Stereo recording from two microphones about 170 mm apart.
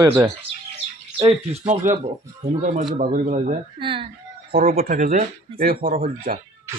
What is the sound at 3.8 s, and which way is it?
Speech, 30° right (ahead or behind).